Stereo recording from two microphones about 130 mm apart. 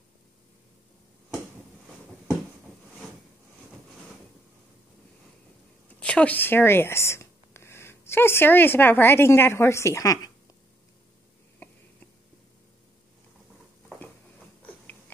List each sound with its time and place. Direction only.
5.9 s speech: 10° left (ahead or behind); by 10.3 s 25° left (ahead or behind)